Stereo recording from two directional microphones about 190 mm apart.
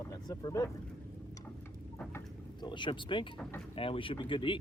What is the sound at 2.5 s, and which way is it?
Speech, 25° left (ahead or behind).